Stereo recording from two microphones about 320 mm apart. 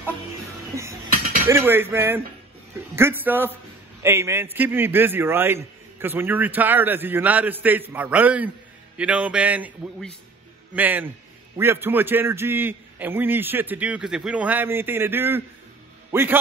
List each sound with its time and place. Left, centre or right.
1.5 s a man's voice: centre